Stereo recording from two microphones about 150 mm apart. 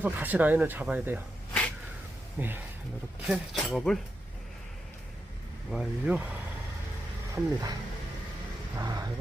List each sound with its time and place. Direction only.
0.0 s speech: 10° right (ahead or behind)
2.4 s speech: 15° right (ahead or behind)
3.2 s speech: centre (ahead or behind)
5.7 s speech: 5° right (ahead or behind)
7.3 s speech: 25° right (ahead or behind)